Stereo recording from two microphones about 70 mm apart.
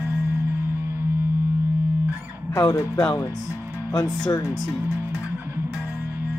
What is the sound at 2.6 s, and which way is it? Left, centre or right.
Speech, left.